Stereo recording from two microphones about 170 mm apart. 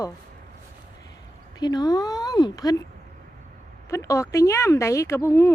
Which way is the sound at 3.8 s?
15° left (ahead or behind).